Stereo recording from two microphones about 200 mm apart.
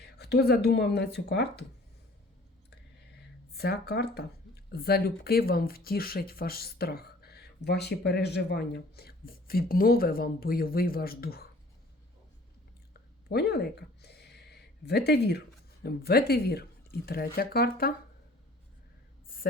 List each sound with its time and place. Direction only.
0.0 s speech: 55° left (ahead or behind)
3.5 s speech: 55° left (ahead or behind)
12.9 s a sound: 55° left (ahead or behind)
15.8 s speech: 50° left (ahead or behind)